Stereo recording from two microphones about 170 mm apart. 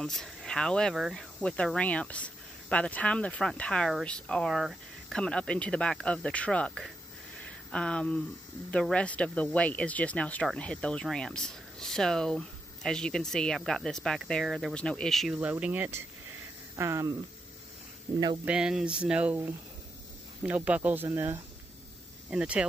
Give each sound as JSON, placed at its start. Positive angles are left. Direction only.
{"t": 0.0, "sound": "speech", "side_deg": 0}
{"t": 18.4, "sound": "speech", "side_deg": -5}